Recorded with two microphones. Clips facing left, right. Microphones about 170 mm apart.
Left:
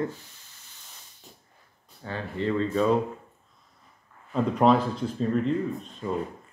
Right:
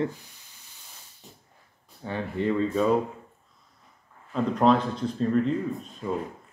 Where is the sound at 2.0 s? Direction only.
15° right (ahead or behind).